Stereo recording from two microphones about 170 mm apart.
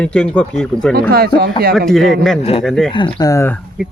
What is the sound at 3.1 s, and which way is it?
Speech, 20° left (ahead or behind).